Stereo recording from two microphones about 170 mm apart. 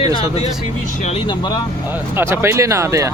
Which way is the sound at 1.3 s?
25° left (ahead or behind).